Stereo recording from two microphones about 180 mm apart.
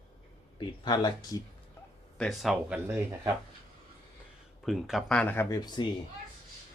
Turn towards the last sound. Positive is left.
turn(degrees=25)  # may be behind; listen again after turning